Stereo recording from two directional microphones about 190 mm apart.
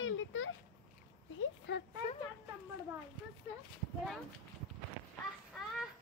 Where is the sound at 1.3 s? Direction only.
70° left (ahead or behind).